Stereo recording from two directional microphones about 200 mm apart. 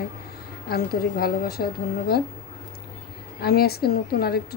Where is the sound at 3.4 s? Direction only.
50° left (ahead or behind).